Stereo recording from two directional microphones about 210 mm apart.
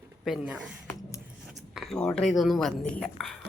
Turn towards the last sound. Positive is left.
turn(degrees=0)  # may be behind; listen again after turning